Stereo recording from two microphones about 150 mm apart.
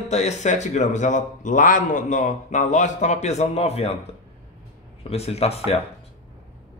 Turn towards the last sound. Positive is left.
turn(degrees=45)  # may be behind; listen again after turning